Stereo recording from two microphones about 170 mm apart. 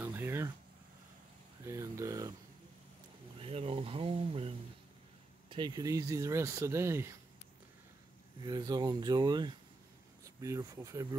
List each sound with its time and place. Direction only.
0.0 s a sound: 10° right (ahead or behind)
1.7 s speech: 20° right (ahead or behind)
3.3 s speech: 35° right (ahead or behind); by 7.2 s 15° right (ahead or behind)
8.4 s speech: 25° right (ahead or behind)